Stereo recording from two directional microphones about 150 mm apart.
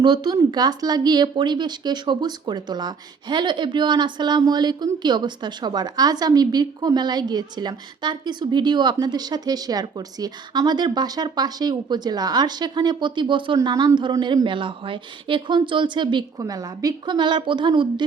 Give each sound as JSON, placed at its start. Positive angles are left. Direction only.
{"t": 0.0, "sound": "speech", "side_deg": -30}